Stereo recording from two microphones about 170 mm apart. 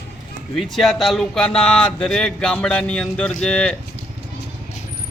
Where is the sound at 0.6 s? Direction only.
Centre (ahead or behind).